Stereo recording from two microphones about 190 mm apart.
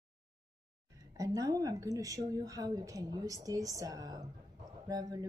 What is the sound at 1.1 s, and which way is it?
A woman's voice, 20° right (ahead or behind).